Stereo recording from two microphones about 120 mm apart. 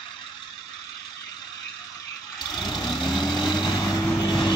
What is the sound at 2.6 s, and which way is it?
Vehicle, 40° left (ahead or behind).